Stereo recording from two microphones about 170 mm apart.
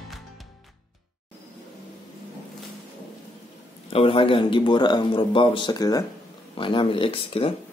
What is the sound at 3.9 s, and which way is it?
A man's voice, 30° left (ahead or behind).